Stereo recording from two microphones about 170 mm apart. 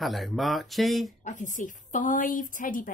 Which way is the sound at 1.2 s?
45° left (ahead or behind).